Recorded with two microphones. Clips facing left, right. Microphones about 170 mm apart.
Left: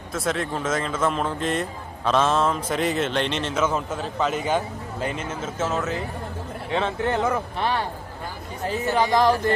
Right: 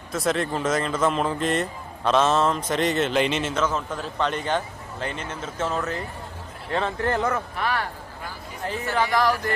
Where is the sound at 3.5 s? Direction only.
5° left (ahead or behind).